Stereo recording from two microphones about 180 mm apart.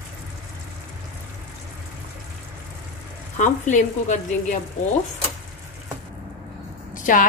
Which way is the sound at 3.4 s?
45° left (ahead or behind).